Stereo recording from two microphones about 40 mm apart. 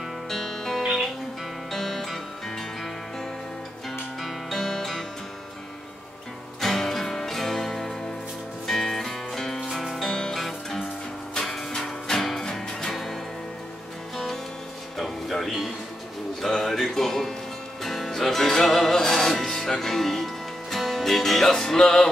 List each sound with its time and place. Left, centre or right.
0.3 s music: centre
6.6 s music: centre
10.0 s music: centre
10.3 s music: centre